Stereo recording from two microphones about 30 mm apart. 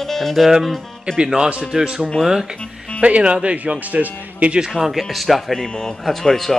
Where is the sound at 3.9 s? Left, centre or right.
Right.